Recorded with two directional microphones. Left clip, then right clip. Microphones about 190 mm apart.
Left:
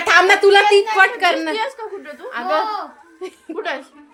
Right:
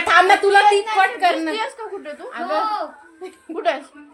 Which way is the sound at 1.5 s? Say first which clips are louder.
Left 2 dB; centre (ahead or behind).